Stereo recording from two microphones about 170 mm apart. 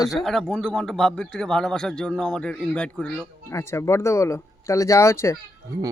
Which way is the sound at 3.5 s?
15° left (ahead or behind).